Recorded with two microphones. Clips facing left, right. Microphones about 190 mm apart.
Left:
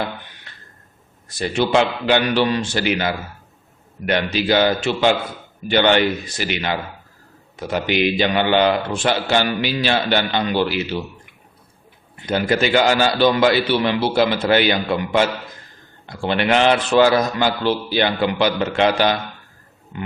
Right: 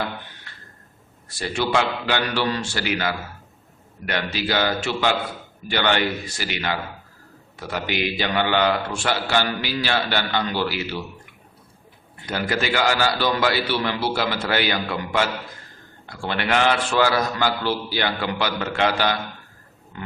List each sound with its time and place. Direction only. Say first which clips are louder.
0.5 s a sound: even; 20° left (ahead or behind)
1.3 s a man's voice: left 5 dB; 20° left (ahead or behind)
12.1 s a man's voice: left 6 dB; 20° left (ahead or behind)